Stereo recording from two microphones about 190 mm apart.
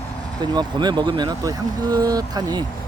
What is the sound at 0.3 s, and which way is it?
Speech, 20° right (ahead or behind).